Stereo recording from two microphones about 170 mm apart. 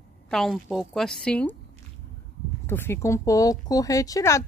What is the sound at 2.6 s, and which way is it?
Speech, 15° left (ahead or behind).